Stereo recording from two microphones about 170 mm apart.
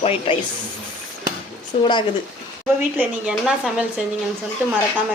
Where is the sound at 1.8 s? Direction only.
25° left (ahead or behind).